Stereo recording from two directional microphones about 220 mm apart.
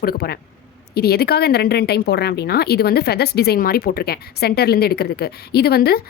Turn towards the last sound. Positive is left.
turn(degrees=45)  # may be behind; listen again after turning